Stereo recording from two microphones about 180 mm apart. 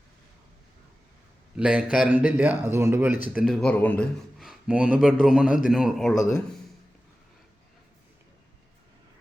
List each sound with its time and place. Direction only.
1.5 s a man's voice: 5° right (ahead or behind)